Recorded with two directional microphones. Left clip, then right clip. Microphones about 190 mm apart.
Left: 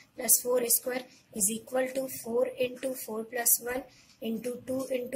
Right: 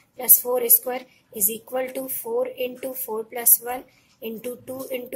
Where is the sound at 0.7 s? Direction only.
35° right (ahead or behind).